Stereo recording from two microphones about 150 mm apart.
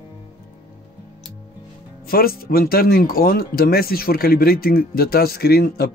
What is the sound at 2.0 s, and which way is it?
Speech, 85° left.